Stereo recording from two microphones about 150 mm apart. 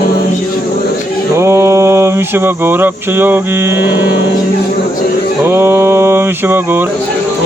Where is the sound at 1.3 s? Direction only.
20° right (ahead or behind).